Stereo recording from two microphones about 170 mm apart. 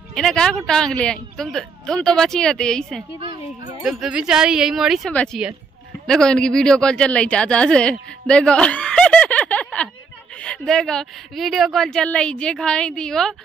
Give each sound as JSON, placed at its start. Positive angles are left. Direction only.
{"t": 0.1, "sound": "speech", "side_deg": 5}
{"t": 3.2, "sound": "speech", "side_deg": -30}
{"t": 3.8, "sound": "speech", "side_deg": 0}